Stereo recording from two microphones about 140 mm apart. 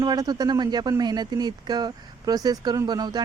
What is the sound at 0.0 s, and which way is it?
Speech, 30° right (ahead or behind).